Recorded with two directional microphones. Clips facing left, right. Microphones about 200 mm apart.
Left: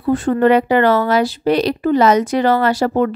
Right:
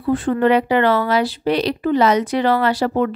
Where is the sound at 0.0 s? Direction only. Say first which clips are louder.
Left 3 dB; 40° left (ahead or behind).